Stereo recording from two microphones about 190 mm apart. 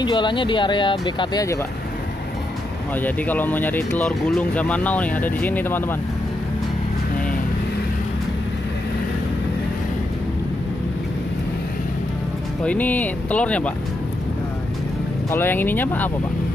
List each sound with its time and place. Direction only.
0.0 s speech: 25° left (ahead or behind)
3.0 s speech: 10° left (ahead or behind)
12.6 s speech: 10° left (ahead or behind)
15.3 s speech: 10° left (ahead or behind)